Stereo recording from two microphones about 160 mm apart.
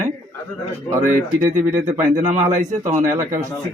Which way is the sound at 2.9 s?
55° right (ahead or behind).